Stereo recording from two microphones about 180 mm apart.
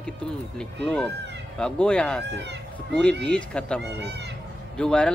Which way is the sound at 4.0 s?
70° right (ahead or behind).